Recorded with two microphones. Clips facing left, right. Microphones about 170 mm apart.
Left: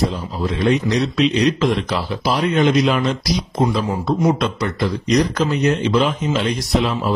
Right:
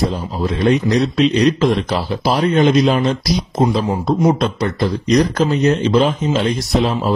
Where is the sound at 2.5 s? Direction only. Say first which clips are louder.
Right 2 dB; 30° right (ahead or behind).